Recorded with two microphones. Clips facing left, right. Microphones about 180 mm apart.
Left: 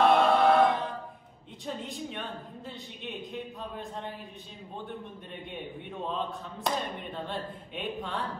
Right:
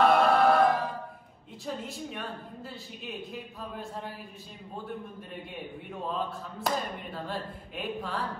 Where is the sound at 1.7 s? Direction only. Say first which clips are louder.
Even; centre (ahead or behind).